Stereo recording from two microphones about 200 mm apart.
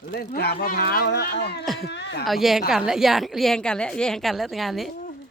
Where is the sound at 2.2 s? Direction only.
Centre (ahead or behind).